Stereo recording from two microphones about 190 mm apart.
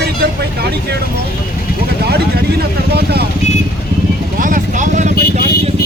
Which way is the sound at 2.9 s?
55° right (ahead or behind).